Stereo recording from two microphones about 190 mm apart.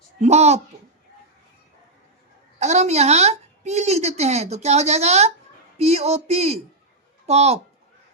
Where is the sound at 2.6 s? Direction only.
35° right (ahead or behind).